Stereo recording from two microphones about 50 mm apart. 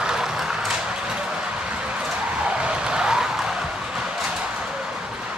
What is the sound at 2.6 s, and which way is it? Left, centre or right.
Vehicle, centre.